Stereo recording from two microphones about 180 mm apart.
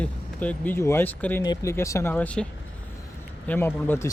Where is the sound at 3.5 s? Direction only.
10° left (ahead or behind).